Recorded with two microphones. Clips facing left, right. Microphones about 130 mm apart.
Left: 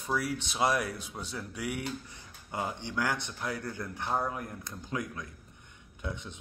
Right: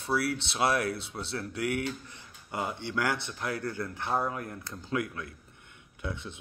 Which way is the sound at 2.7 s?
15° left (ahead or behind).